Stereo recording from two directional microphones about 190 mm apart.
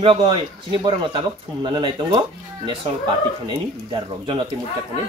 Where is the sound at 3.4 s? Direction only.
25° right (ahead or behind).